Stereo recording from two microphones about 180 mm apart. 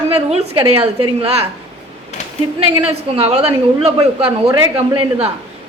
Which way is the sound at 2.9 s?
35° right (ahead or behind).